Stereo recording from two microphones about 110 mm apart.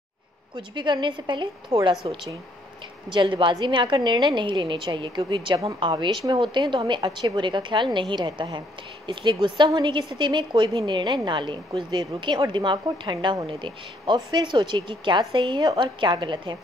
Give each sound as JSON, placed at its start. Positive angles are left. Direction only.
{"t": 0.6, "sound": "speech", "side_deg": -45}